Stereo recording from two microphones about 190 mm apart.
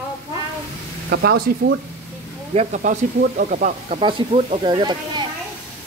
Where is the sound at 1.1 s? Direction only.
55° right (ahead or behind).